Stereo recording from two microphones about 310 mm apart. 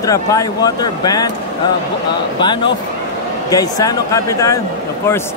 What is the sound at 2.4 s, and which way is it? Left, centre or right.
A man's voice, centre.